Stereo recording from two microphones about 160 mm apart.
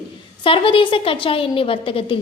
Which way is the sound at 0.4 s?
35° left (ahead or behind).